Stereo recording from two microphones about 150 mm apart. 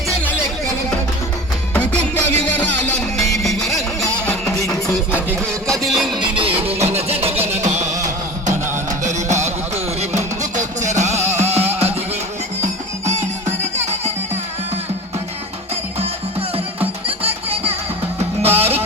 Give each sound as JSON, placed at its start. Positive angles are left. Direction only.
{"t": 1.7, "sound": "music", "side_deg": 5}
{"t": 5.8, "sound": "music", "side_deg": 0}
{"t": 6.1, "sound": "music", "side_deg": -35}
{"t": 9.0, "sound": "music", "side_deg": -50}
{"t": 17.5, "sound": "music", "side_deg": -40}